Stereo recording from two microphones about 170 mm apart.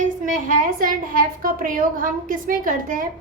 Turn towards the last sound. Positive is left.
turn(degrees=-55)  # may be behind; listen again after turning